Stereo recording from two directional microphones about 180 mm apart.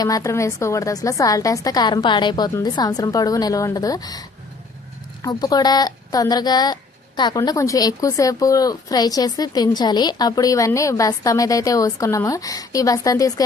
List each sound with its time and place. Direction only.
0.0 s speech: 20° left (ahead or behind)